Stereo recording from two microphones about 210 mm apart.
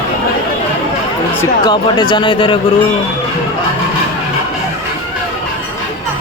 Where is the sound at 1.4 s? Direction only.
20° left (ahead or behind).